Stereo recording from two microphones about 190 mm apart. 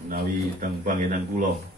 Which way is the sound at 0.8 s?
40° right (ahead or behind).